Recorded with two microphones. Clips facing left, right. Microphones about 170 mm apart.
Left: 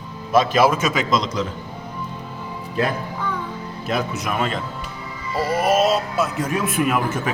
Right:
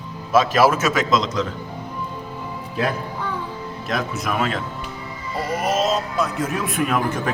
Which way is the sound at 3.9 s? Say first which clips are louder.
Left 1 dB; centre (ahead or behind).